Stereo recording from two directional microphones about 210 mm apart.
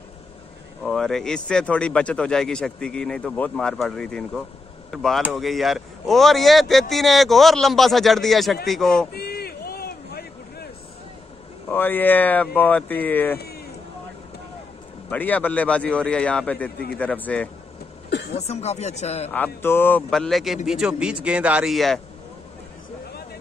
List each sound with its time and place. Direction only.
0.8 s speech: centre (ahead or behind)
9.1 s a sound: 50° left (ahead or behind)
11.7 s speech: 10° left (ahead or behind)
15.0 s speech: 10° left (ahead or behind)
18.3 s speech: 30° left (ahead or behind)
19.3 s speech: 10° left (ahead or behind)